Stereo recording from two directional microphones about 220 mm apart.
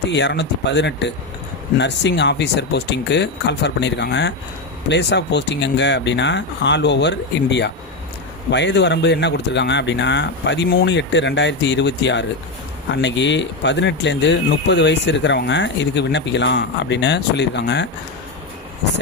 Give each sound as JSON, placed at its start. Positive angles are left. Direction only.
{"t": 0.1, "sound": "speech", "side_deg": 55}